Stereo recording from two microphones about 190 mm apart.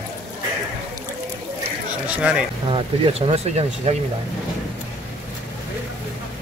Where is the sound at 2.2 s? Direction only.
5° right (ahead or behind).